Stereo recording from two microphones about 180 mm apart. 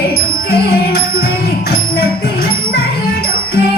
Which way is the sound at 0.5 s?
60° left (ahead or behind).